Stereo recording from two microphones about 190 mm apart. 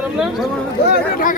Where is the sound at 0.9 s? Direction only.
45° left (ahead or behind).